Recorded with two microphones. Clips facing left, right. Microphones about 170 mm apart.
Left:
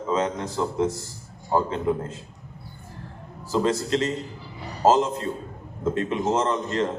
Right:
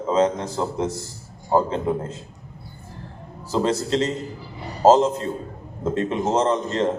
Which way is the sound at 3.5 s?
30° right (ahead or behind).